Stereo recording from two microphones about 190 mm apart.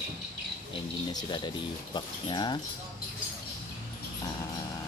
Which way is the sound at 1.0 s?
25° left (ahead or behind).